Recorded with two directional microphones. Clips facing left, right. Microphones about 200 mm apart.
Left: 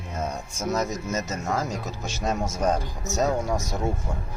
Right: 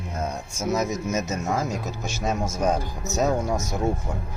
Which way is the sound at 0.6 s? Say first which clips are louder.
Right 2 dB; 5° right (ahead or behind).